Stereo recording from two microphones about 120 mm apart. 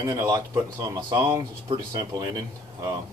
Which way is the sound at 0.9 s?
35° right (ahead or behind).